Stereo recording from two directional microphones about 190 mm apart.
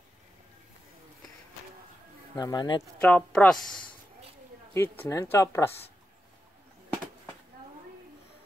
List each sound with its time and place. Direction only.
2.3 s speech: 20° left (ahead or behind)
3.0 s speech: 5° left (ahead or behind)
4.7 s speech: 10° left (ahead or behind)